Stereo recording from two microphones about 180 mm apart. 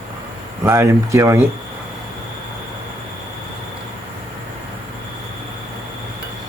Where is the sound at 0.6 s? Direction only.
15° right (ahead or behind).